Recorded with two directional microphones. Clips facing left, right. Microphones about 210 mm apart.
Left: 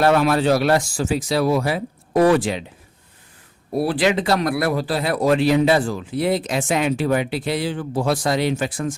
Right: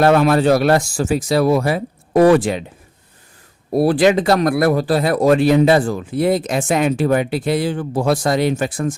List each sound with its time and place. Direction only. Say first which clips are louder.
0.0 s speech: right 4 dB; 50° right (ahead or behind)
3.7 s speech: right 6 dB; 40° right (ahead or behind)